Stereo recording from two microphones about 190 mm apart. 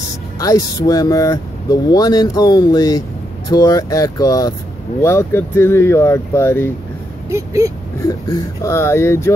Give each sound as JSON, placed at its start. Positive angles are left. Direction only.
{"t": 0.4, "sound": "speech", "side_deg": 20}
{"t": 7.2, "sound": "speech", "side_deg": -15}
{"t": 8.1, "sound": "speech", "side_deg": 15}